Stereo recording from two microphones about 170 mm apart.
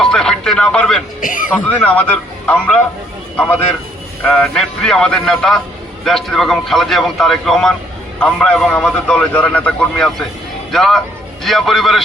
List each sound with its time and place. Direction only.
0.0 s music: 5° left (ahead or behind)
1.2 s a man's voice: 50° left (ahead or behind)
1.5 s a man's voice: 10° left (ahead or behind)
4.2 s a man's voice: 5° left (ahead or behind)